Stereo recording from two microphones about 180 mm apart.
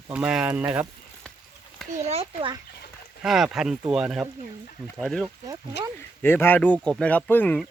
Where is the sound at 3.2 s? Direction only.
Centre (ahead or behind).